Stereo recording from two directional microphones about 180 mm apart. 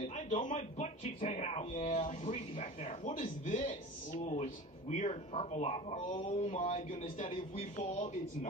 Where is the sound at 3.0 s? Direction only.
45° left (ahead or behind).